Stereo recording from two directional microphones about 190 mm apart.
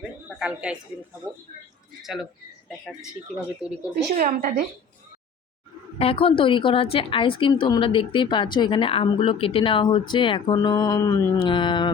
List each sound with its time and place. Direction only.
0.3 s a woman's voice: 5° right (ahead or behind)
1.2 s speech: 15° right (ahead or behind)
2.0 s speech: centre (ahead or behind)
4.1 s a woman's voice: 40° right (ahead or behind)
6.0 s a woman's voice: 30° left (ahead or behind)